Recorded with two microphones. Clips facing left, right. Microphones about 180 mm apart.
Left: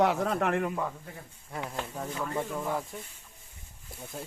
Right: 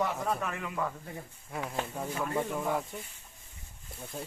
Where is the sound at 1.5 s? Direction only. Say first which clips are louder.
Right 1 dB; 5° right (ahead or behind).